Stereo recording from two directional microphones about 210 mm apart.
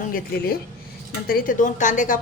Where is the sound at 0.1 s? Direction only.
45° left (ahead or behind).